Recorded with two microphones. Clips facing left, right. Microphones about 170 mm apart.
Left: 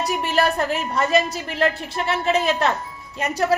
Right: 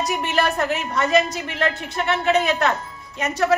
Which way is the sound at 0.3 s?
35° left (ahead or behind).